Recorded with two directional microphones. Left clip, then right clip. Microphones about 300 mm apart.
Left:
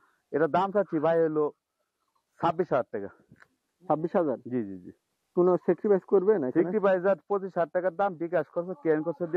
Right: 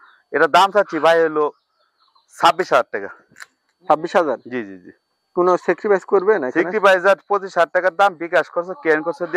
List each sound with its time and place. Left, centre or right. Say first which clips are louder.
0.0 s speech: right 10 dB; centre